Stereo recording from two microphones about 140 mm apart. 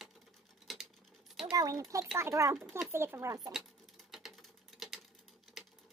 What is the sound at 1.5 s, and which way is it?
Speech, 25° right (ahead or behind).